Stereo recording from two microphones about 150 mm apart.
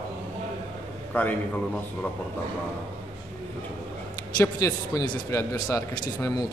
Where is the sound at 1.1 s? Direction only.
10° left (ahead or behind).